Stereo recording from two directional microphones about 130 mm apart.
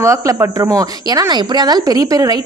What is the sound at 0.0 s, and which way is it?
Speech, 20° right (ahead or behind).